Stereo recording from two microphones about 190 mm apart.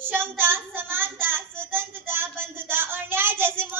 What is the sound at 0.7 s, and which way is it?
Speech, 10° right (ahead or behind).